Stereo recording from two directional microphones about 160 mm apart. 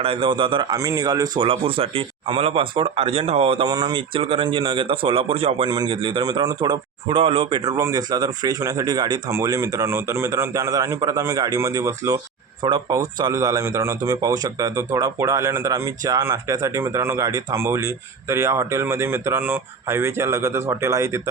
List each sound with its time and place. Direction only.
0.0 s speech: 35° right (ahead or behind)
3.7 s speech: 25° right (ahead or behind)
5.6 s a man's voice: 25° right (ahead or behind)